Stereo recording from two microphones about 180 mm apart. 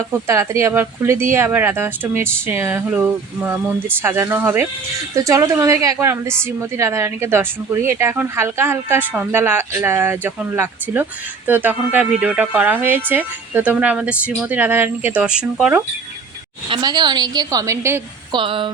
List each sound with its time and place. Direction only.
0.1 s a woman's voice: 15° right (ahead or behind)
16.6 s a woman's voice: 25° right (ahead or behind)
18.3 s a woman's voice: 30° right (ahead or behind)